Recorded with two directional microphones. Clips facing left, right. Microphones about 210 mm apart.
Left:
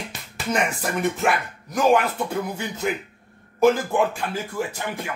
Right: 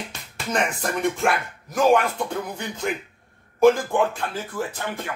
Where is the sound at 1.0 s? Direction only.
Centre (ahead or behind).